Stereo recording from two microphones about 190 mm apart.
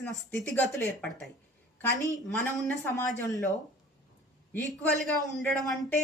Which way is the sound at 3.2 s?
20° left (ahead or behind).